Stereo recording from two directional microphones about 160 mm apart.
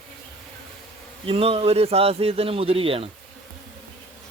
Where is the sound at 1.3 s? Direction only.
35° right (ahead or behind).